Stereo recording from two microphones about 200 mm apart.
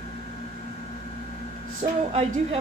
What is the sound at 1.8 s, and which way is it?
Speech, 35° right (ahead or behind).